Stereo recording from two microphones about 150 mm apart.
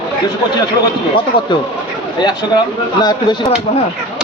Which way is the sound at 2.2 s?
30° left (ahead or behind).